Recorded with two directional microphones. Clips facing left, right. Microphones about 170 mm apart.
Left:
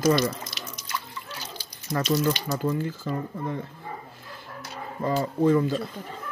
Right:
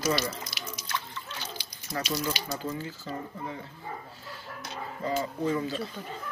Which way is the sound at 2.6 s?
50° left (ahead or behind).